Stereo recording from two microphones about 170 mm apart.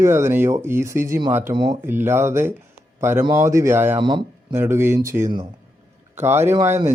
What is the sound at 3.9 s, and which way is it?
Speech, 25° right (ahead or behind).